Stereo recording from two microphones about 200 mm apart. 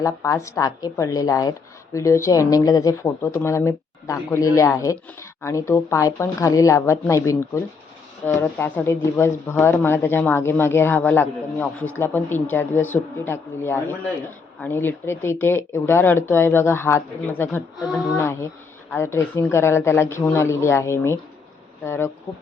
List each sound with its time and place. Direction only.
0.0 s a woman's voice: 15° left (ahead or behind)